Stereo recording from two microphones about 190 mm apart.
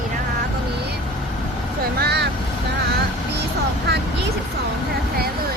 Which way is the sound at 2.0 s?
60° right (ahead or behind).